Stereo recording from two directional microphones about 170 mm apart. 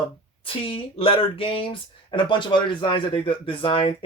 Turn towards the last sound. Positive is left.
turn(degrees=30)  # may be behind; listen again after turning